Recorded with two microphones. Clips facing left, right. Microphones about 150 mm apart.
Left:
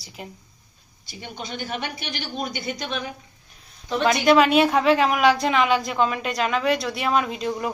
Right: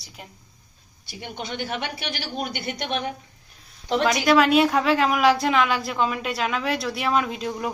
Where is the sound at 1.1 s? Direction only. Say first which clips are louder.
Right 1 dB; 60° right (ahead or behind).